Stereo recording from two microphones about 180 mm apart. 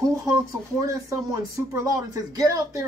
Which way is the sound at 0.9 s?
20° right (ahead or behind).